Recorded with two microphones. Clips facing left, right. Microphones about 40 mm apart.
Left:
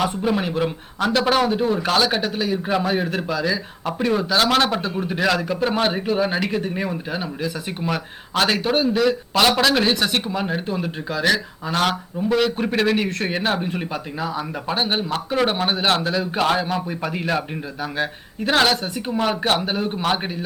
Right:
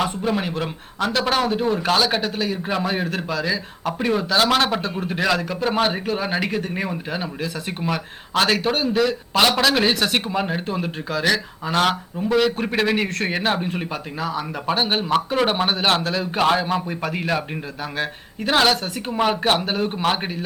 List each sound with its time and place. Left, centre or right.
0.0 s a man's voice: centre
18.9 s a man's voice: centre
19.6 s speech: centre